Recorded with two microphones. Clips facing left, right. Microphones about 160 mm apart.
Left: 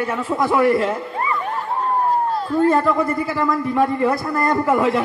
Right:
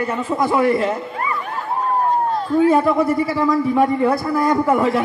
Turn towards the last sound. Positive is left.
turn(degrees=0)  # may be behind; listen again after turning